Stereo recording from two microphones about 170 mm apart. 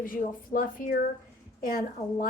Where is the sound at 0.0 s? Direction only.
55° left (ahead or behind).